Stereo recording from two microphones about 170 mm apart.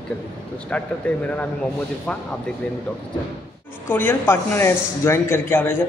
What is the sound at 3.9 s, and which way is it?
Speech, 15° left (ahead or behind).